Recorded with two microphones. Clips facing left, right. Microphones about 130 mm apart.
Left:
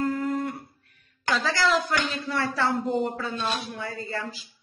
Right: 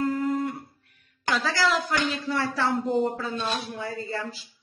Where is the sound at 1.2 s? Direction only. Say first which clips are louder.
Even; 5° right (ahead or behind).